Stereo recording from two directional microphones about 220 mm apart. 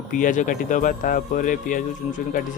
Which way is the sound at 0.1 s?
35° left (ahead or behind).